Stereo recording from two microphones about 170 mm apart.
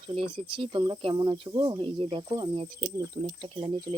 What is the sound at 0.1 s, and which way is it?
Speech, 30° right (ahead or behind).